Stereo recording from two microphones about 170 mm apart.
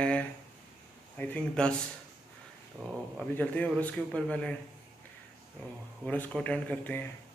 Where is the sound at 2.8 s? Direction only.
Centre (ahead or behind).